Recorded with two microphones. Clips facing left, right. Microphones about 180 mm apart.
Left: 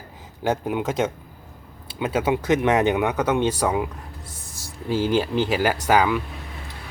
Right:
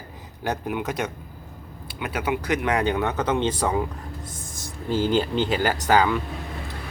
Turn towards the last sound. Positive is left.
turn(degrees=10)  # may be behind; listen again after turning